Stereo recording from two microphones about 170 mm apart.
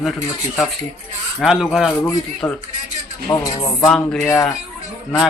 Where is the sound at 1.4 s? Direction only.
Centre (ahead or behind).